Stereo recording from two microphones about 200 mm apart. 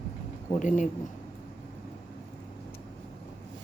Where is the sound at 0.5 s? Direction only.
40° left (ahead or behind).